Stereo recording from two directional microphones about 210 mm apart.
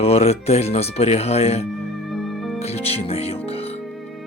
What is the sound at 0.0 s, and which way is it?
Speech, 30° left (ahead or behind).